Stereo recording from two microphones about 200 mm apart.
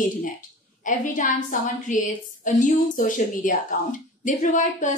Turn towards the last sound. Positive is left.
turn(degrees=40)  # may be behind; listen again after turning